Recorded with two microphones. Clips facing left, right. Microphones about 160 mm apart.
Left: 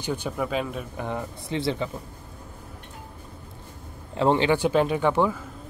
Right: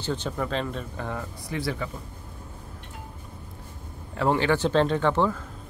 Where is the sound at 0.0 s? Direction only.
10° left (ahead or behind).